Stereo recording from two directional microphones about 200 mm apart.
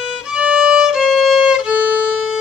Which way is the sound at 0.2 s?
5° right (ahead or behind).